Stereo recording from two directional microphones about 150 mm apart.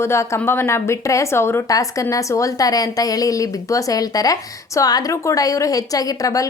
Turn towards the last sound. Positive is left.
turn(degrees=20)  # may be behind; listen again after turning